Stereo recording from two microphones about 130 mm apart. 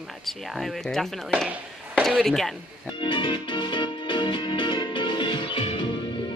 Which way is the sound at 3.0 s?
40° left (ahead or behind).